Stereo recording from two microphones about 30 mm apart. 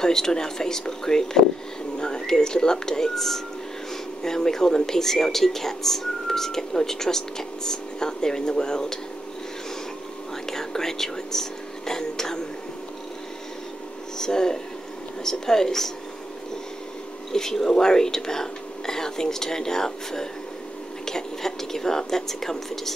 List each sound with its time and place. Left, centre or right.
0.0 s speech: centre
3.2 s speech: centre
10.5 s speech: centre
14.1 s speech: left
17.3 s speech: centre